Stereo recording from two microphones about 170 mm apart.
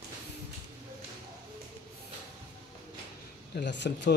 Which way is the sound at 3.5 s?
90° left.